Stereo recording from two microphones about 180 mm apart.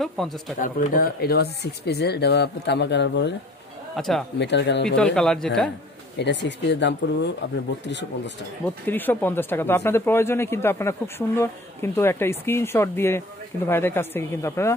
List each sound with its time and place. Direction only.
0.0 s a man's voice: centre (ahead or behind)
0.6 s speech: 50° left (ahead or behind); by 3.3 s 70° left (ahead or behind)
3.9 s speech: centre (ahead or behind)
4.4 s speech: 75° left (ahead or behind)
4.8 s a man's voice: 5° left (ahead or behind)
6.1 s speech: 75° left (ahead or behind)
8.6 s speech: 10° left (ahead or behind)